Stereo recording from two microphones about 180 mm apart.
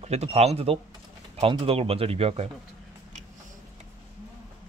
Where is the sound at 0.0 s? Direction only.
35° right (ahead or behind).